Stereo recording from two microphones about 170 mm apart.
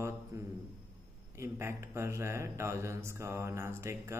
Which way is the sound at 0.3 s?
20° right (ahead or behind).